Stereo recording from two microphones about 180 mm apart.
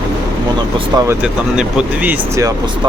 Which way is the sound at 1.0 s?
5° right (ahead or behind).